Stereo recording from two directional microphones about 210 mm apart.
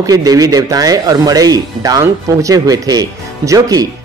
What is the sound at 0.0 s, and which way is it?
Speech, 15° right (ahead or behind).